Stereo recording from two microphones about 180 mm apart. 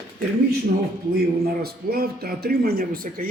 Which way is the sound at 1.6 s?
60° right (ahead or behind).